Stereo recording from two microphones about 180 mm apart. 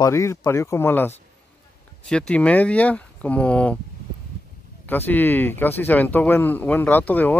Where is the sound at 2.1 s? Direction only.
5° left (ahead or behind).